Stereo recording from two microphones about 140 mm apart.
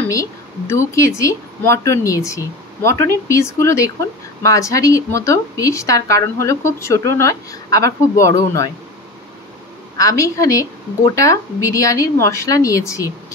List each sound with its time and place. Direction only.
0.1 s speech: 20° left (ahead or behind)
9.9 s speech: 25° left (ahead or behind)